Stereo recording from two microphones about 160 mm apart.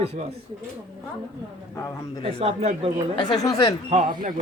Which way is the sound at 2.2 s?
40° right (ahead or behind).